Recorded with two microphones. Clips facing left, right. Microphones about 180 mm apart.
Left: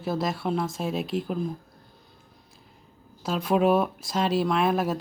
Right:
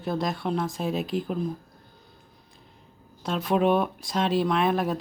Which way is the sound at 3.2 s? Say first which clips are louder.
Left 1 dB; centre (ahead or behind).